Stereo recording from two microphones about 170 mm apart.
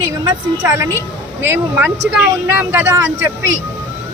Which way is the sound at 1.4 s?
15° right (ahead or behind).